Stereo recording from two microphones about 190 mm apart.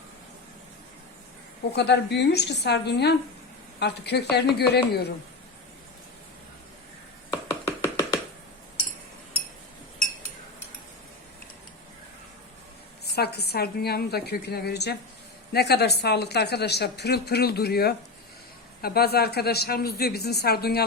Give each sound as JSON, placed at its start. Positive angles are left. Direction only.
{"t": 1.7, "sound": "a woman's voice", "side_deg": 60}
{"t": 7.8, "sound": "a sound", "side_deg": 15}
{"t": 13.1, "sound": "a woman's voice", "side_deg": 60}